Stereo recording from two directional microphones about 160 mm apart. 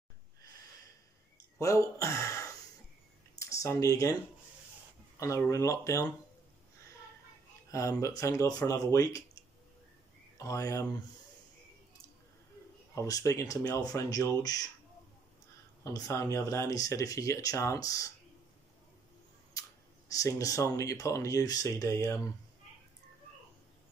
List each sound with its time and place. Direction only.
1.6 s speech: 20° left (ahead or behind)
3.3 s a sound: 20° left (ahead or behind)
5.2 s speech: 20° left (ahead or behind)
7.7 s speech: 20° left (ahead or behind)
12.9 s speech: 20° left (ahead or behind)
15.8 s speech: 20° left (ahead or behind)
20.1 s speech: 20° left (ahead or behind)